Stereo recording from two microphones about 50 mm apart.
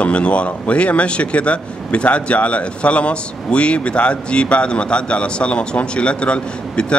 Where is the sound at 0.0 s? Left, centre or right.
Left.